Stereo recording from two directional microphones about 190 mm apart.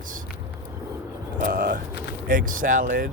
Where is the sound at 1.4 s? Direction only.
50° right (ahead or behind).